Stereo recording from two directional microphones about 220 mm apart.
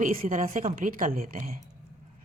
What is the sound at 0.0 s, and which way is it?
A woman's voice, 40° right (ahead or behind).